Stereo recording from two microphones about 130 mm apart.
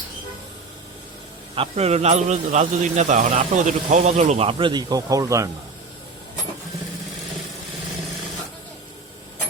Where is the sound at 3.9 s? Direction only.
60° right (ahead or behind); by 5.5 s 25° right (ahead or behind).